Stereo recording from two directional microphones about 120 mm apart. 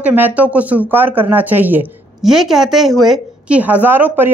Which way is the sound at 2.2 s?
5° right (ahead or behind).